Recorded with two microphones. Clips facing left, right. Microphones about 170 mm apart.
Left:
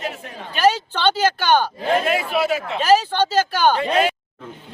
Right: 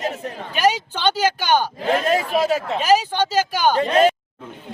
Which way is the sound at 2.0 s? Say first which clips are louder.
Right 1 dB; 40° right (ahead or behind).